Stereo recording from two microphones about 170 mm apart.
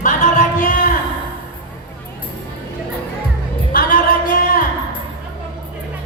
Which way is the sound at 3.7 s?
55° left (ahead or behind).